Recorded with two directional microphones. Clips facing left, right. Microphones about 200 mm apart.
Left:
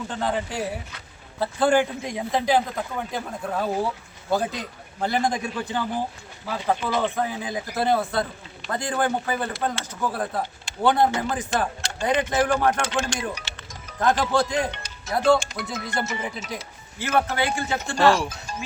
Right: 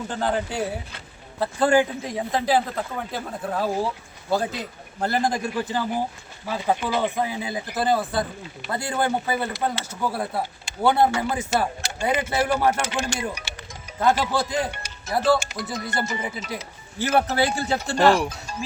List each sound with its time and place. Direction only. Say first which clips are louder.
0.1 s speech: right 2 dB; centre (ahead or behind)
17.0 s speech: right 2 dB; 40° right (ahead or behind)
18.1 s speech: right 2 dB; 15° right (ahead or behind)